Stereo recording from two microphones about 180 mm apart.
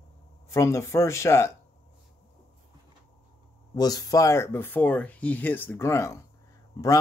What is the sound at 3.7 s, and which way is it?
Speech, 20° left (ahead or behind).